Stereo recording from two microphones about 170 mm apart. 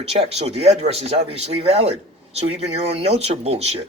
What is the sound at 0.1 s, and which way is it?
Speech, 35° right (ahead or behind).